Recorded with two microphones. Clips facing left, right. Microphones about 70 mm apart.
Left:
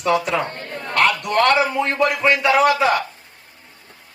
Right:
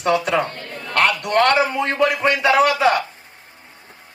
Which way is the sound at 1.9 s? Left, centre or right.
Left.